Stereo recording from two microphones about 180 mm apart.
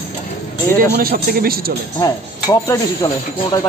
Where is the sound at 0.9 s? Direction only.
55° right (ahead or behind).